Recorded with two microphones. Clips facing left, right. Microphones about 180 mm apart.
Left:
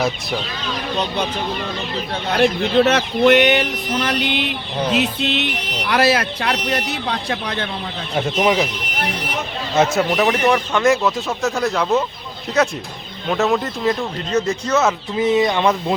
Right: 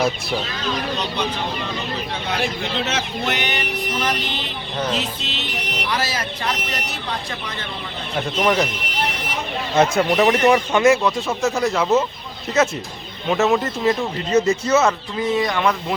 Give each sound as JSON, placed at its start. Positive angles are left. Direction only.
{"t": 2.3, "sound": "speech", "side_deg": 60}
{"t": 8.4, "sound": "speech", "side_deg": 5}
{"t": 9.7, "sound": "speech", "side_deg": 0}
{"t": 10.9, "sound": "speech", "side_deg": 0}
{"t": 15.2, "sound": "speech", "side_deg": 20}